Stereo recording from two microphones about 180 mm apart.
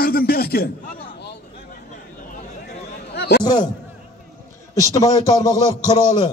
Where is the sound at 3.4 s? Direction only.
25° left (ahead or behind).